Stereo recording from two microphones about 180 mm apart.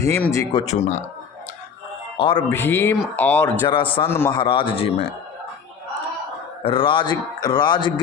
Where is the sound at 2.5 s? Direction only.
10° left (ahead or behind).